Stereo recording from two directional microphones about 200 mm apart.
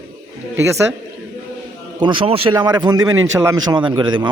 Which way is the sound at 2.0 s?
25° right (ahead or behind).